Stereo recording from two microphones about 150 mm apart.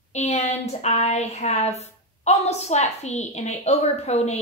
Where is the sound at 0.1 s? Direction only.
50° left (ahead or behind).